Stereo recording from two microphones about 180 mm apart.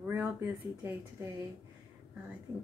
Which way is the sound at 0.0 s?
10° right (ahead or behind).